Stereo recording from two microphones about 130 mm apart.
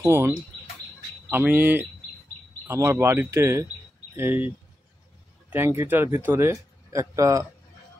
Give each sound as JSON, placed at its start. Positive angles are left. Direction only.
{"t": 0.0, "sound": "speech", "side_deg": -20}
{"t": 1.3, "sound": "speech", "side_deg": -15}
{"t": 5.5, "sound": "speech", "side_deg": -15}